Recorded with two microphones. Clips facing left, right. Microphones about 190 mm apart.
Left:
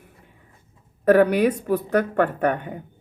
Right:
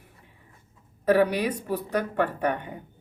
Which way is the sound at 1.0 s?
50° left (ahead or behind).